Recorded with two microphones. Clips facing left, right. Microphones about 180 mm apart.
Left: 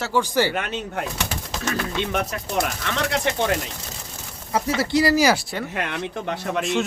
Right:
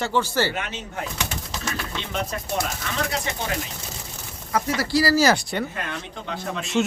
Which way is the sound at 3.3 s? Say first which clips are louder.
Left 7 dB; 65° left (ahead or behind).